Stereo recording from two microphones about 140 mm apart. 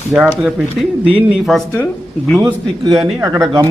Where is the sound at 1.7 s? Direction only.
10° left (ahead or behind).